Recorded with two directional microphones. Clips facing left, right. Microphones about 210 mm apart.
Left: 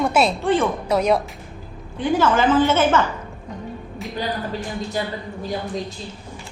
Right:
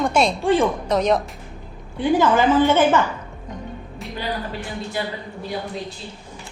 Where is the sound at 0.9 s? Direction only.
10° left (ahead or behind).